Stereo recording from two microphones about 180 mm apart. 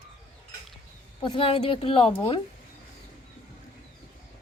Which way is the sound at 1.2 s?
30° left (ahead or behind).